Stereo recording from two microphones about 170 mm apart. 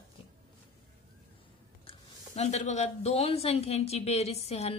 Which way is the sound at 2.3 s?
40° left (ahead or behind).